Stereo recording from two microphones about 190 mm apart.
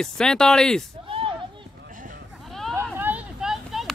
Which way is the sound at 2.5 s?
Centre (ahead or behind).